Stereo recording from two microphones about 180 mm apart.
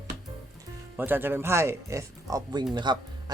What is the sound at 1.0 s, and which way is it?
A man's voice, 10° right (ahead or behind).